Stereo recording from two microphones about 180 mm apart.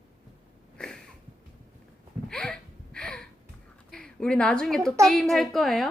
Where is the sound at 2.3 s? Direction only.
5° left (ahead or behind).